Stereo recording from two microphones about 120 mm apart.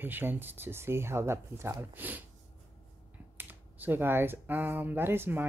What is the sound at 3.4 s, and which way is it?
Speech, 15° right (ahead or behind).